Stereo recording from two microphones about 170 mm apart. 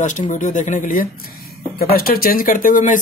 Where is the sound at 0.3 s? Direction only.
45° left (ahead or behind).